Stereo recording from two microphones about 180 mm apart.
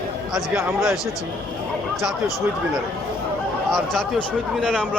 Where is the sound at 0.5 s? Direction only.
Centre (ahead or behind).